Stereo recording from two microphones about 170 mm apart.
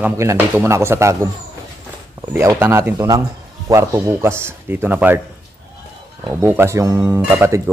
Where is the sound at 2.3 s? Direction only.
15° right (ahead or behind).